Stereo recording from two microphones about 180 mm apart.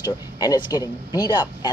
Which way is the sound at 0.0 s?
20° left (ahead or behind).